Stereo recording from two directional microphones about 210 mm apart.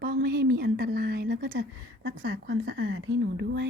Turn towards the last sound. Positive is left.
turn(degrees=-60)  # may be behind; listen again after turning